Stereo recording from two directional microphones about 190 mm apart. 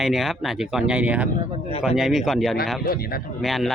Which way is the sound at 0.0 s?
Centre (ahead or behind).